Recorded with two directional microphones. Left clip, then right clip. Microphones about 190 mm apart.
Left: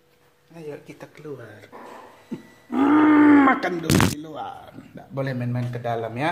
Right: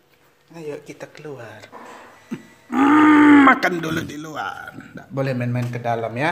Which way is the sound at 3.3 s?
35° right (ahead or behind).